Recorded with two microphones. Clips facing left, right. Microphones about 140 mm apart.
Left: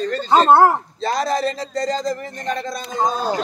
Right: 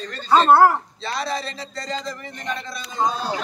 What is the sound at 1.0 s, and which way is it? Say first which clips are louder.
Speech: left 9 dB; 45° left (ahead or behind).